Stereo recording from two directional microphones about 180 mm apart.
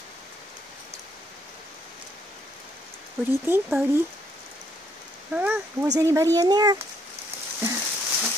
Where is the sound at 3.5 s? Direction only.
10° right (ahead or behind).